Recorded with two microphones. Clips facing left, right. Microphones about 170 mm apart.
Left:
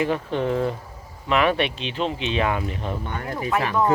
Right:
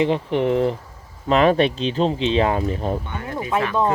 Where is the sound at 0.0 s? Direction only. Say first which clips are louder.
Right 4 dB; 25° right (ahead or behind).